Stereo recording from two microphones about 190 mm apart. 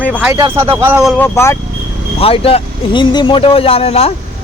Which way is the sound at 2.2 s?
30° left (ahead or behind).